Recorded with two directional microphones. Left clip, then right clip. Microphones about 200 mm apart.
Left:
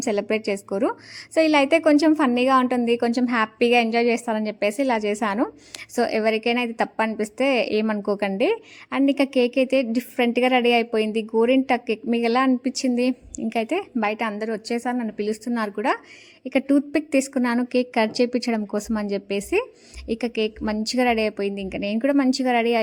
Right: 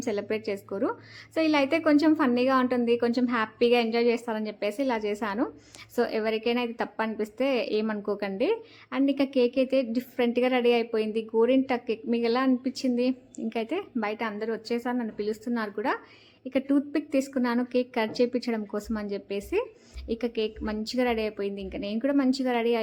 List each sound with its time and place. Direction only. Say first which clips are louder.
0.0 s a woman's voice: left 6 dB; 40° left (ahead or behind)